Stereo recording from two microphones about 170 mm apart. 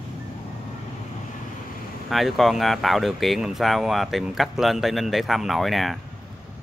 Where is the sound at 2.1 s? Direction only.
Centre (ahead or behind).